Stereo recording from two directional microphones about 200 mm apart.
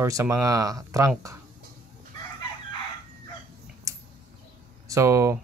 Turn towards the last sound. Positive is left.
turn(degrees=-15)  # may be behind; listen again after turning